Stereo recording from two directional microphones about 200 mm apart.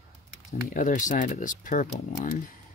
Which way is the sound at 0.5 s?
40° left (ahead or behind).